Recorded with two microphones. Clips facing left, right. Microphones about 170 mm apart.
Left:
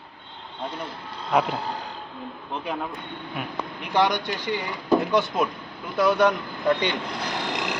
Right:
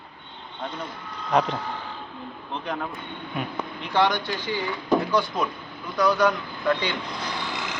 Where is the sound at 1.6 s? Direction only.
35° left (ahead or behind).